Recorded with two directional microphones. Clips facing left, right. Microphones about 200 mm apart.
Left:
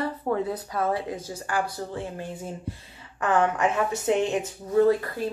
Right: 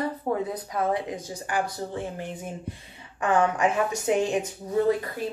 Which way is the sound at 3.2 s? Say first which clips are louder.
Even; 15° right (ahead or behind).